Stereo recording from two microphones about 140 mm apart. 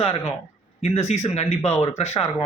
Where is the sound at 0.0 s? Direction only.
45° left (ahead or behind).